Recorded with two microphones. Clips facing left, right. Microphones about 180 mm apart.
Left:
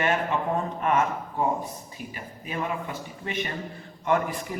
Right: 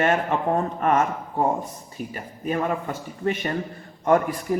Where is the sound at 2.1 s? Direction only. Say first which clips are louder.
Right 9 dB; 45° right (ahead or behind).